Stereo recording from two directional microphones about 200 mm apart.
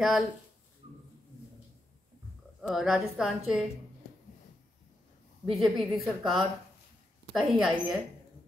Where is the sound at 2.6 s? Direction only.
Centre (ahead or behind).